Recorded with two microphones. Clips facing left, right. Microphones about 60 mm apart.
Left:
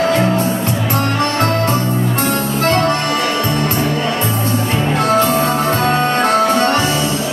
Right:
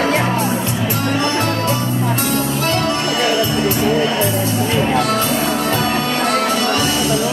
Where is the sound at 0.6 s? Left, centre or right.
Left.